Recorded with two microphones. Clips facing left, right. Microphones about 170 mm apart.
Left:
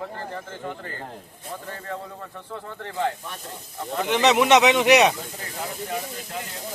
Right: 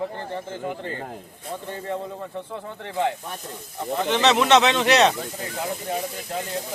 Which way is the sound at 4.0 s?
10° left (ahead or behind).